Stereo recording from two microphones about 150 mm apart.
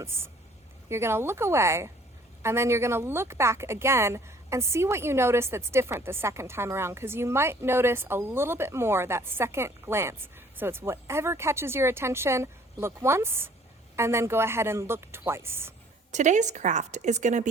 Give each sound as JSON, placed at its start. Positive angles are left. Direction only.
{"t": 0.0, "sound": "a woman's voice", "side_deg": -15}
{"t": 16.1, "sound": "a woman's voice", "side_deg": -55}